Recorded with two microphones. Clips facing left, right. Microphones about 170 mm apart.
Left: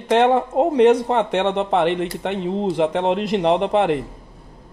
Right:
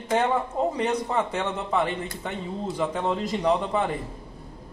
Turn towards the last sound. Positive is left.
turn(degrees=80)